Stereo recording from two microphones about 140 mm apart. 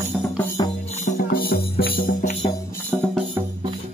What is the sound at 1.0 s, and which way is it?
Music, 80° left.